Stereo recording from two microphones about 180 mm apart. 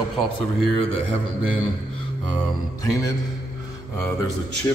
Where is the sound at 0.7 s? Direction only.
90° right.